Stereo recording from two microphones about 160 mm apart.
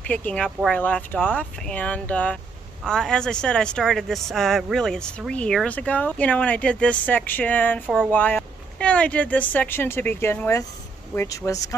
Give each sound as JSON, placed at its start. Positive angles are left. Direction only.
{"t": 0.0, "sound": "speech", "side_deg": 10}
{"t": 7.8, "sound": "speech", "side_deg": -5}
{"t": 8.1, "sound": "speech", "side_deg": 10}